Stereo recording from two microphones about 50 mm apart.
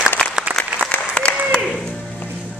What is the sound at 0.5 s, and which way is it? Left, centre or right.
Applause, right.